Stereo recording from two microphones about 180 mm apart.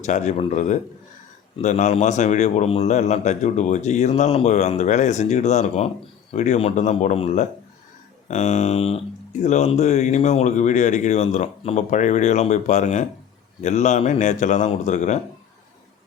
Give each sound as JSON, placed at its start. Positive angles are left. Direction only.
{"t": 0.0, "sound": "a man's voice", "side_deg": 40}